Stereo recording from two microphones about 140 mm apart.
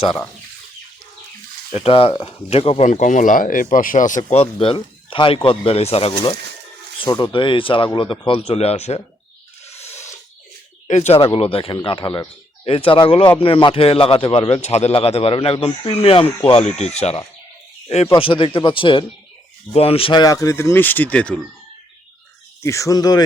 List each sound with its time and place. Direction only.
1.7 s speech: 45° left (ahead or behind); by 4.2 s 65° left (ahead or behind)
4.3 s speech: 45° left (ahead or behind)
7.0 s a man's voice: 35° left (ahead or behind)
9.6 s a sound: 50° left (ahead or behind)
9.9 s a sound: 20° left (ahead or behind)
10.8 s a man's voice: 55° left (ahead or behind)
20.2 s speech: 25° left (ahead or behind)
22.6 s speech: 20° left (ahead or behind)